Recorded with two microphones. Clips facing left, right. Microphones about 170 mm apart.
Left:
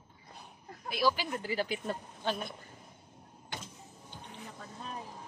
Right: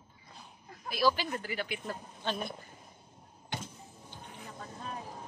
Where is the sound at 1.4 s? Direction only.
30° left (ahead or behind).